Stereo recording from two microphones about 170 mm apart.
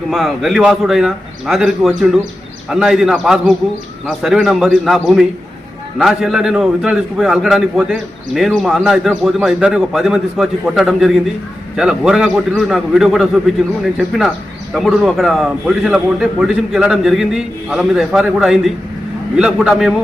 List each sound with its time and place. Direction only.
0.1 s a man's voice: centre (ahead or behind)
14.7 s a man's voice: centre (ahead or behind)